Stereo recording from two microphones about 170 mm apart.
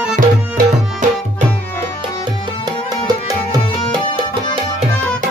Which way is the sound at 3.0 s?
25° right (ahead or behind).